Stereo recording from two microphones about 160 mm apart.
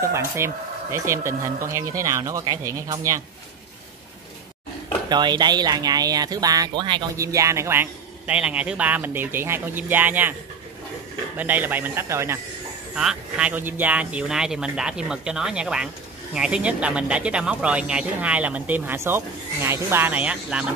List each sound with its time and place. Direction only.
0.0 s speech: 15° right (ahead or behind)
5.1 s speech: 25° right (ahead or behind); by 10.3 s 10° right (ahead or behind)
11.3 s speech: 10° right (ahead or behind)
12.9 s speech: 5° right (ahead or behind)